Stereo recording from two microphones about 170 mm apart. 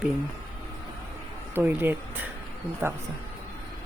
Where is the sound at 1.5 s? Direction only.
10° right (ahead or behind).